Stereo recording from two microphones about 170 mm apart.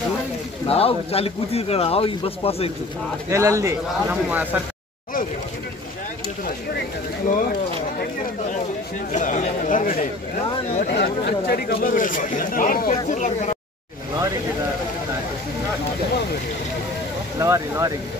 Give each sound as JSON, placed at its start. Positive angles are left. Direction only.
{"t": 0.7, "sound": "a man's voice", "side_deg": 35}
{"t": 3.3, "sound": "speech", "side_deg": -20}
{"t": 7.2, "sound": "speech", "side_deg": 55}
{"t": 9.1, "sound": "speech", "side_deg": 45}
{"t": 11.0, "sound": "speech", "side_deg": 70}
{"t": 17.4, "sound": "speech", "side_deg": -20}